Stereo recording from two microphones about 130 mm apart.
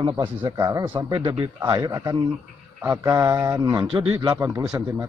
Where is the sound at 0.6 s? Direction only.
30° right (ahead or behind).